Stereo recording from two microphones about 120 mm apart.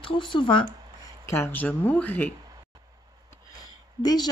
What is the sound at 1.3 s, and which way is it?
Speech, 20° left (ahead or behind).